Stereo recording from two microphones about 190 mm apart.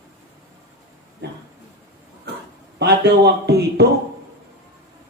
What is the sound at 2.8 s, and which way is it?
Speech, 60° right (ahead or behind).